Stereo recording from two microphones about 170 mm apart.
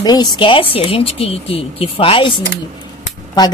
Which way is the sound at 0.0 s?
25° left (ahead or behind).